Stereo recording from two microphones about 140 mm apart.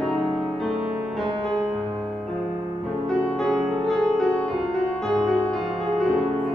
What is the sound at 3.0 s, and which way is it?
Music, centre (ahead or behind).